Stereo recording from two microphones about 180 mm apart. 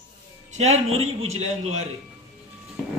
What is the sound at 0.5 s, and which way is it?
A man's voice, 40° right (ahead or behind).